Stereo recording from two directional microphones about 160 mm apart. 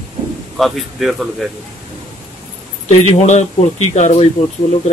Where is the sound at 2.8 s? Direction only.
45° left (ahead or behind).